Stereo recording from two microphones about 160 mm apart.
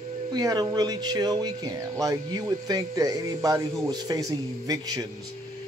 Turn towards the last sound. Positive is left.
turn(degrees=-25)  # may be behind; listen again after turning